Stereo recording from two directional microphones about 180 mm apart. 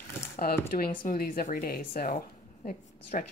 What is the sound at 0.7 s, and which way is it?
Speech, 50° left (ahead or behind).